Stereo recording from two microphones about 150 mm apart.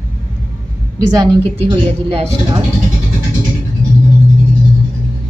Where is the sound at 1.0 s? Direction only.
30° right (ahead or behind).